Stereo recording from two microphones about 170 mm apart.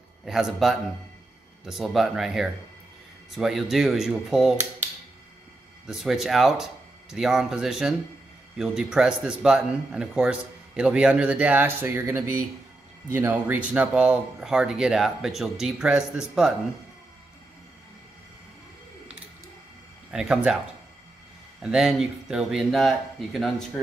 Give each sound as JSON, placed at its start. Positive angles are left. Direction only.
{"t": 0.2, "sound": "a man's voice", "side_deg": 0}
{"t": 5.9, "sound": "a man's voice", "side_deg": 0}
{"t": 20.1, "sound": "speech", "side_deg": -5}
{"t": 21.5, "sound": "a man's voice", "side_deg": -5}